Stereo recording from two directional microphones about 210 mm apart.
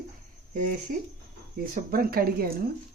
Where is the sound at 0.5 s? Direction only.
40° right (ahead or behind).